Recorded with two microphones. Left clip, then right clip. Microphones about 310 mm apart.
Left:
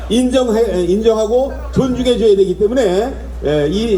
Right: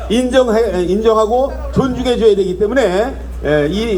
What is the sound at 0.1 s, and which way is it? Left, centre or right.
A man's voice, centre.